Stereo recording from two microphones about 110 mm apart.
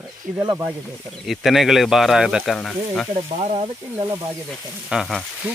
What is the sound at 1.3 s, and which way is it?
Speech, centre (ahead or behind).